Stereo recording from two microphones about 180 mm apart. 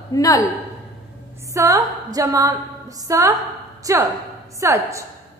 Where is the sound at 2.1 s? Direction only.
20° right (ahead or behind).